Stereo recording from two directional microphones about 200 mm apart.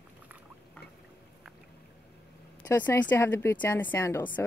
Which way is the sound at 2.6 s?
15° left (ahead or behind).